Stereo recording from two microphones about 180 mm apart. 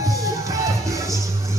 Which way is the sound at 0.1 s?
20° right (ahead or behind).